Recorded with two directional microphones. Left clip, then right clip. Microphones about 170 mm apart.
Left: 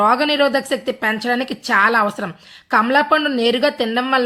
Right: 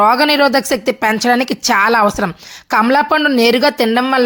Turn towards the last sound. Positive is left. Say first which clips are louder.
# right 5 dB
turn(degrees=-40)  # may be behind; listen again after turning